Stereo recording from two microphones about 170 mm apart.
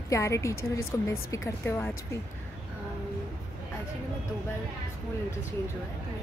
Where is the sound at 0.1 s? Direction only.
15° left (ahead or behind).